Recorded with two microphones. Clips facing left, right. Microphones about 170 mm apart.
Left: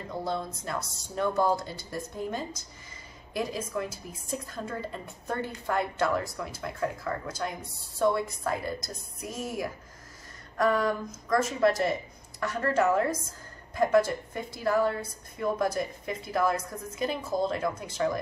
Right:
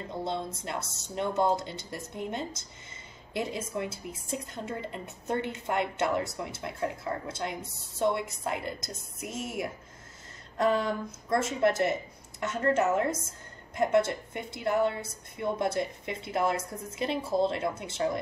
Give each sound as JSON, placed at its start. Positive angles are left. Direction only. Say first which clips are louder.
{"t": 0.1, "sound": "a woman's voice", "louder": "left 2 dB", "side_deg": -25}